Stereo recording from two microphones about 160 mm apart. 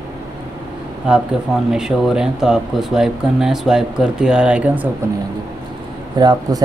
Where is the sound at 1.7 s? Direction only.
5° right (ahead or behind).